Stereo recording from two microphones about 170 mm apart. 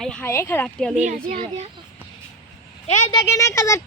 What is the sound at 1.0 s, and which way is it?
Speech, 50° right (ahead or behind).